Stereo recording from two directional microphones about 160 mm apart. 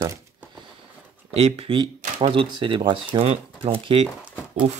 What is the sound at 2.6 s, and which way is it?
Speech, 30° right (ahead or behind).